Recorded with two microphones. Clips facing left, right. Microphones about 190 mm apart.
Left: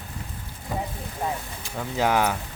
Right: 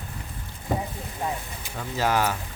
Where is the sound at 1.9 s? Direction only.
15° left (ahead or behind).